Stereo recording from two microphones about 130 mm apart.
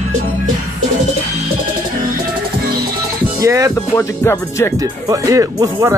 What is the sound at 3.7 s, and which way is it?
Speech, 20° left (ahead or behind).